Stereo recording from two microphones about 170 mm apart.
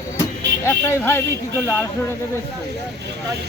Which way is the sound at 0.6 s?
15° left (ahead or behind).